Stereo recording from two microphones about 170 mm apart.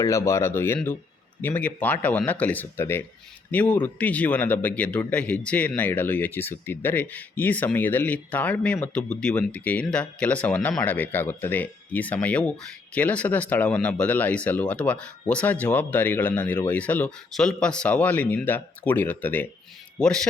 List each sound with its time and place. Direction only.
0.0 s speech: 15° left (ahead or behind)